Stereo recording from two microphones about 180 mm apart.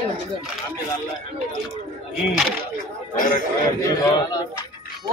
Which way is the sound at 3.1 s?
50° left (ahead or behind).